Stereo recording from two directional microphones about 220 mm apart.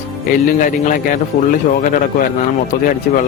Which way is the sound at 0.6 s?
35° left (ahead or behind).